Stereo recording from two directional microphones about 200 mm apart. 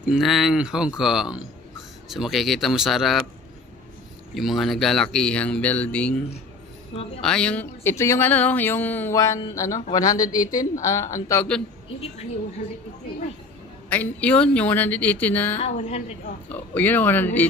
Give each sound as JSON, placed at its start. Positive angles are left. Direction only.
{"t": 0.0, "sound": "speech", "side_deg": 0}
{"t": 4.3, "sound": "speech", "side_deg": 0}
{"t": 7.2, "sound": "speech", "side_deg": 5}
{"t": 13.8, "sound": "speech", "side_deg": 5}
{"t": 15.5, "sound": "a woman's voice", "side_deg": 30}
{"t": 16.5, "sound": "speech", "side_deg": 10}